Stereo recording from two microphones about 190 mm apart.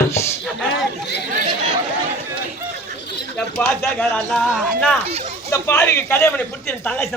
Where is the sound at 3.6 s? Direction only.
10° left (ahead or behind).